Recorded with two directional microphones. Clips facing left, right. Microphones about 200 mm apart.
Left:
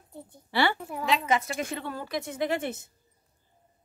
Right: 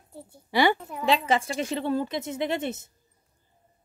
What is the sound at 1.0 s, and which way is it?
A woman's voice, 30° right (ahead or behind).